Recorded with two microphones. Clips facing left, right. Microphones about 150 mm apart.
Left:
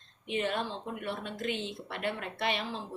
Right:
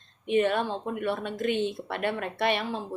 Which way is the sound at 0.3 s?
55° right (ahead or behind).